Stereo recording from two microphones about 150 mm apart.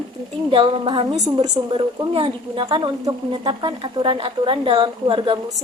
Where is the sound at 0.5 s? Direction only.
35° right (ahead or behind).